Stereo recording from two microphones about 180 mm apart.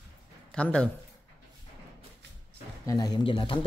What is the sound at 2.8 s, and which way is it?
Speech, 20° left (ahead or behind).